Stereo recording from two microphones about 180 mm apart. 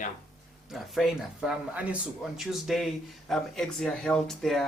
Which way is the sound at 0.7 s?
Centre (ahead or behind).